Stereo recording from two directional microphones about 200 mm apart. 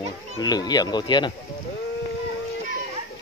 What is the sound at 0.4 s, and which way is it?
Speech, 20° left (ahead or behind).